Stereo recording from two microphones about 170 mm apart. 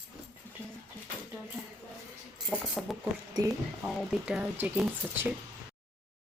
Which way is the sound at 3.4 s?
20° right (ahead or behind).